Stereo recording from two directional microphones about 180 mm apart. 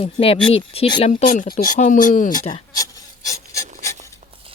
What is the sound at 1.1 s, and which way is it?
Speech, 45° left (ahead or behind).